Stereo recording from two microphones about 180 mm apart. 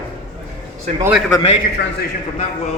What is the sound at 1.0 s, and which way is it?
Speech, 10° right (ahead or behind).